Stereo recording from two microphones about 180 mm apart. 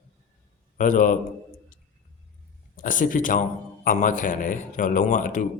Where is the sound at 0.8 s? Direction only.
45° left (ahead or behind).